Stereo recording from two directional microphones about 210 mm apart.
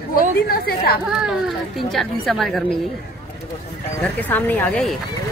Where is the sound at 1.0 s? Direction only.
5° right (ahead or behind).